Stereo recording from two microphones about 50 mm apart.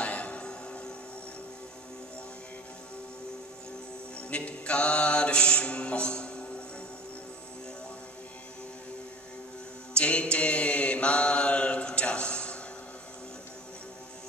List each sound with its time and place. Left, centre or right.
0.0 s music: left
4.3 s mantra: left
9.9 s mantra: left